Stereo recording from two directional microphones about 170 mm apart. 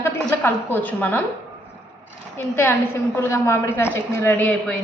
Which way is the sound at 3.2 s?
15° left (ahead or behind).